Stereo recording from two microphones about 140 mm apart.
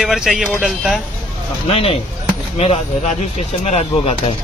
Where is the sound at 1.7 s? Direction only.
45° left (ahead or behind).